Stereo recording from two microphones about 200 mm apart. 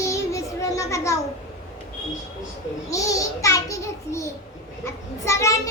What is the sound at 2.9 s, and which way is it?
A child's voice, 15° left (ahead or behind).